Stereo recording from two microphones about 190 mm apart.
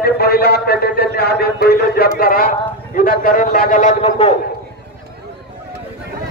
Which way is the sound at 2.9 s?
45° left (ahead or behind).